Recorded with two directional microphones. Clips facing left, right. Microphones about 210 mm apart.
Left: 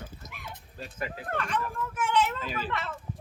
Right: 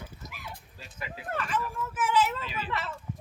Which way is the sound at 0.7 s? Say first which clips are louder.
Left 10 dB; 50° left (ahead or behind).